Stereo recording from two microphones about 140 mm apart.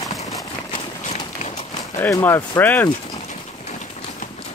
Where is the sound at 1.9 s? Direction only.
20° left (ahead or behind).